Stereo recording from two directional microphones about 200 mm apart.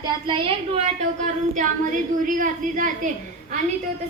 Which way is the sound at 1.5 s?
40° right (ahead or behind).